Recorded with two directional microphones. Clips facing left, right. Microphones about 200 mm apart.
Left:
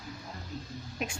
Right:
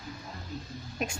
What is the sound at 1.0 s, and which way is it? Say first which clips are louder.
Speech: right 2 dB; 45° right (ahead or behind).